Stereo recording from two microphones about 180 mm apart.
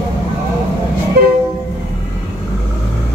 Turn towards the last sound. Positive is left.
turn(degrees=-60)  # may be behind; listen again after turning